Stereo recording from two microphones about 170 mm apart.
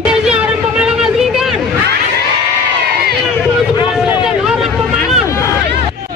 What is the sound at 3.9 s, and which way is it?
Vehicle, 5° right (ahead or behind).